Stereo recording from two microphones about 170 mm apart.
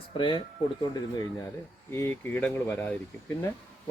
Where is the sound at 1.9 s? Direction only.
15° left (ahead or behind).